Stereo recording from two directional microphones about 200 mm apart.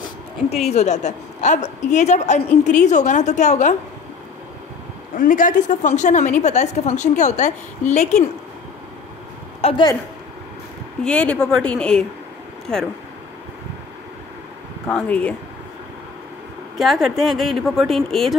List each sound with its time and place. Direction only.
0.0 s a woman's voice: 30° left (ahead or behind)
5.1 s a woman's voice: 40° left (ahead or behind)
9.6 s a woman's voice: 25° left (ahead or behind)
11.1 s speech: 5° left (ahead or behind)
14.9 s speech: 5° left (ahead or behind)
16.7 s speech: centre (ahead or behind)